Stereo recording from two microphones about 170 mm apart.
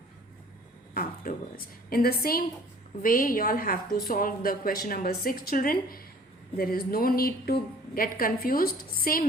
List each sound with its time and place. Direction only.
0.9 s a woman's voice: 55° left (ahead or behind)